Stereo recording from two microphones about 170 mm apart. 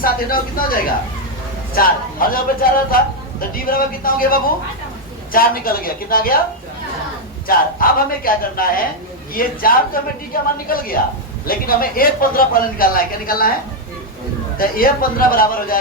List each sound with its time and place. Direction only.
0.0 s speech: 55° left (ahead or behind)
7.4 s speech: 55° left (ahead or behind)
14.6 s speech: 60° left (ahead or behind)